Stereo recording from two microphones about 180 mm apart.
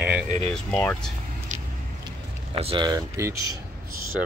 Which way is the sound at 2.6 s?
30° right (ahead or behind).